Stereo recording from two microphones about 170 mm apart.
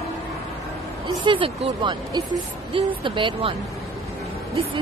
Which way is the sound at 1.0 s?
30° right (ahead or behind).